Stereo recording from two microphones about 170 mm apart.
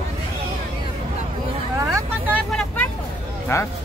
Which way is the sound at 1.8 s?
20° right (ahead or behind).